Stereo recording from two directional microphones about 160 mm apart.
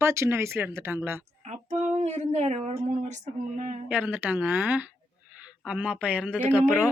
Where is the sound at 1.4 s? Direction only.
45° right (ahead or behind).